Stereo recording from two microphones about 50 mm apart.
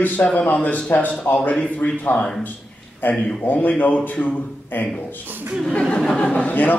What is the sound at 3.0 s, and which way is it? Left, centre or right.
A man's voice, left.